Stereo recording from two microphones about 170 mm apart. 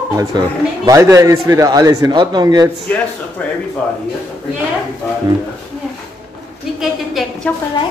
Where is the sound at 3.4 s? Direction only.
10° left (ahead or behind).